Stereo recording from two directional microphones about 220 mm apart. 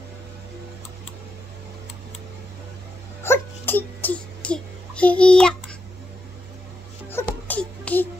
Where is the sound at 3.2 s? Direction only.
10° left (ahead or behind).